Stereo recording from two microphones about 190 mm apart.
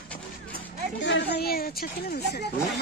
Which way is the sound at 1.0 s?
65° left (ahead or behind).